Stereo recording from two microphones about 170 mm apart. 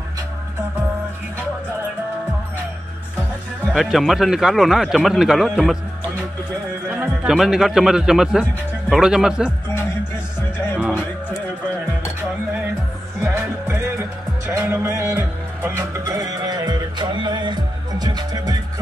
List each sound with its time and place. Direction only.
3.7 s a man's voice: centre (ahead or behind)
6.9 s a man's voice: 5° right (ahead or behind)
13.2 s music: 15° right (ahead or behind)